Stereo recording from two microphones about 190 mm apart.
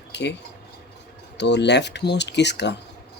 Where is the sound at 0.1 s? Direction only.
65° left (ahead or behind).